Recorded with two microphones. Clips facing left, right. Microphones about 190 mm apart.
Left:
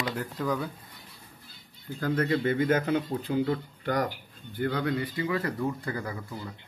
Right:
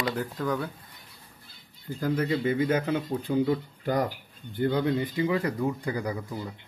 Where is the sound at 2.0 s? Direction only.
10° right (ahead or behind).